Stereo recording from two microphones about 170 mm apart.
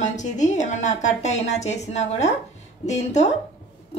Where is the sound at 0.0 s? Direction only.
45° left (ahead or behind).